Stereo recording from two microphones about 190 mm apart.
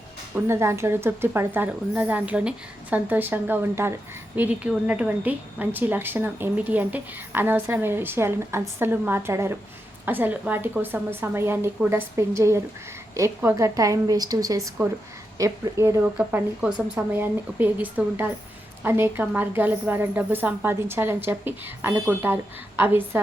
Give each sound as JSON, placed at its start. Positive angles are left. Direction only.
{"t": 0.3, "sound": "a woman's voice", "side_deg": -15}